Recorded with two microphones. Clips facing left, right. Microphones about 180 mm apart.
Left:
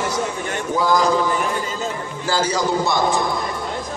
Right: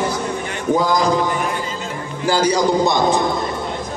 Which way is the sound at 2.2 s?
15° right (ahead or behind).